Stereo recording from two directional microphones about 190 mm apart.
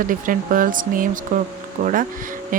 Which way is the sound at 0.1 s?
45° right (ahead or behind).